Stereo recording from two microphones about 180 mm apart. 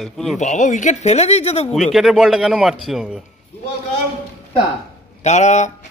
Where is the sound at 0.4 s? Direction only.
45° left (ahead or behind).